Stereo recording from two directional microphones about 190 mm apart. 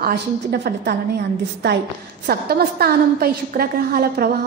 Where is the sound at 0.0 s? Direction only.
55° right (ahead or behind).